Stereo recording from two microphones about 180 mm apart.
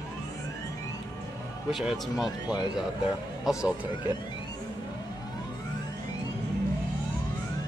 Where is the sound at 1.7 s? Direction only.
Centre (ahead or behind).